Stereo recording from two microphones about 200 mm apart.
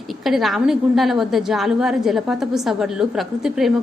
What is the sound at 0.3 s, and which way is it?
A woman's voice, centre (ahead or behind).